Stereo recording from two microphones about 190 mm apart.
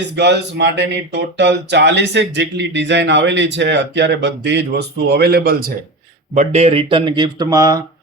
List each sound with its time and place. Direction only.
0.2 s speech: 65° right (ahead or behind)
6.3 s speech: 35° right (ahead or behind); by 7.8 s 20° right (ahead or behind)